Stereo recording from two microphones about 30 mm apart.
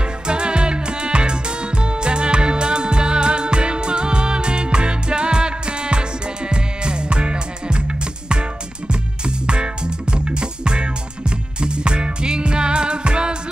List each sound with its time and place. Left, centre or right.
0.3 s music: right